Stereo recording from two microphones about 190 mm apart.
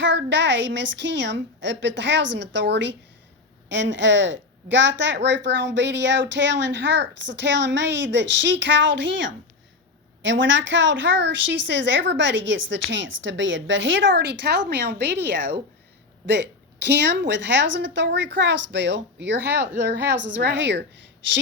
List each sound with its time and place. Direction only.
0.0 s a woman's voice: 70° right (ahead or behind)